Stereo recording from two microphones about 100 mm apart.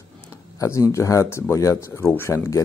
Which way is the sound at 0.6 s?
30° left (ahead or behind).